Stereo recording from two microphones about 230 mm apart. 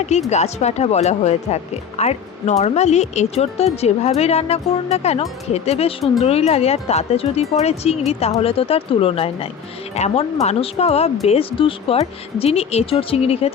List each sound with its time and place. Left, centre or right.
0.3 s speech: left